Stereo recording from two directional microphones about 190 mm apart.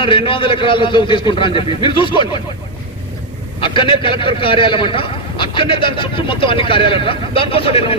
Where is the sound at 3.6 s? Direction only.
25° left (ahead or behind).